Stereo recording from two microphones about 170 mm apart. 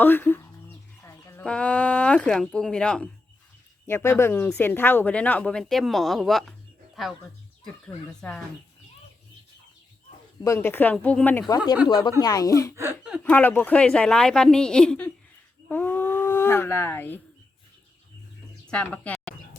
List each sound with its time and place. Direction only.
0.0 s speech: 10° left (ahead or behind)
1.0 s a sound: 15° left (ahead or behind)
1.5 s a woman's voice: 5° left (ahead or behind)
8.2 s a woman's voice: 5° left (ahead or behind)
10.4 s speech: 15° left (ahead or behind)
11.4 s speech: 25° left (ahead or behind)
12.7 s speech: 15° right (ahead or behind)
13.1 s a woman's voice: 5° left (ahead or behind)
18.7 s speech: 5° left (ahead or behind)